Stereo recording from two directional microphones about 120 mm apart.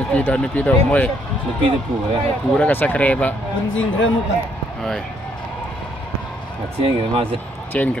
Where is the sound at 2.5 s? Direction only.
15° left (ahead or behind).